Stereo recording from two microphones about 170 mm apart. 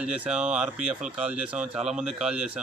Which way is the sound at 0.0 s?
5° right (ahead or behind).